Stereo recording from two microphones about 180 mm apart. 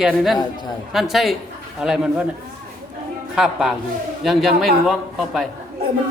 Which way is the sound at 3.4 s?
5° right (ahead or behind).